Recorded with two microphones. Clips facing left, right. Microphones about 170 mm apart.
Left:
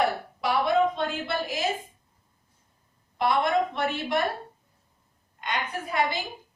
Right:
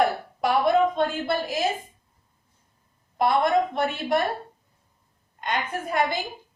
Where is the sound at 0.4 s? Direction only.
45° right (ahead or behind).